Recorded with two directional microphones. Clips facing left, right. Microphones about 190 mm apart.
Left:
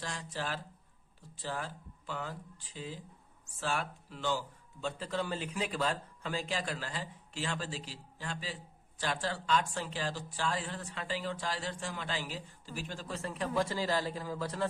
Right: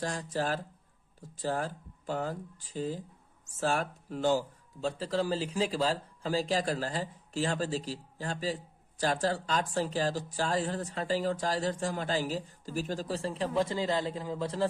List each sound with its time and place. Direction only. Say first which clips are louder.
0.0 s speech: right 7 dB; 45° right (ahead or behind); by 14.7 s 25° right (ahead or behind)